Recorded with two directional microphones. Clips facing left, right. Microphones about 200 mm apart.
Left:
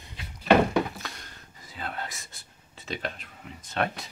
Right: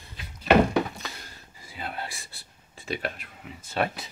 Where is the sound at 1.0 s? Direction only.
5° right (ahead or behind).